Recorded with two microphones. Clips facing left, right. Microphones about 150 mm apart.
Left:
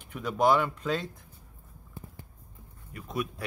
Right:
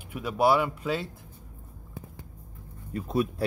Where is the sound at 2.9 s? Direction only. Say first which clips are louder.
Right 7 dB; 30° right (ahead or behind).